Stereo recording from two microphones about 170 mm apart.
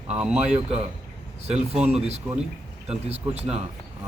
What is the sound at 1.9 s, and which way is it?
A man's voice, 40° right (ahead or behind).